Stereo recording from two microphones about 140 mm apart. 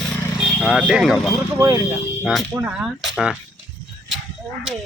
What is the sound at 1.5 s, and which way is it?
Speech, 20° right (ahead or behind).